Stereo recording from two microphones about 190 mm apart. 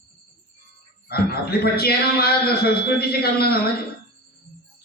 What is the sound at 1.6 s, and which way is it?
A man's voice, 55° left (ahead or behind).